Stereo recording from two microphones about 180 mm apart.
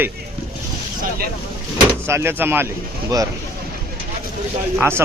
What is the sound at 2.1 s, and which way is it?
Speech, 15° right (ahead or behind).